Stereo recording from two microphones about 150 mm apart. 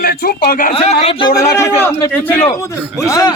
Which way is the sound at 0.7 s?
40° left (ahead or behind).